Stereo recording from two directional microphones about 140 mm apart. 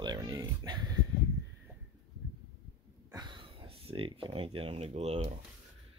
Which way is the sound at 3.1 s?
35° right (ahead or behind).